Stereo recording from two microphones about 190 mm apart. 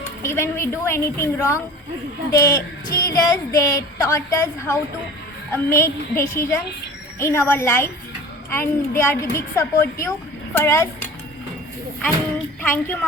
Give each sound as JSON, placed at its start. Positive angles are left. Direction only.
{"t": 0.2, "sound": "a woman's voice", "side_deg": 15}
{"t": 12.6, "sound": "a woman's voice", "side_deg": 10}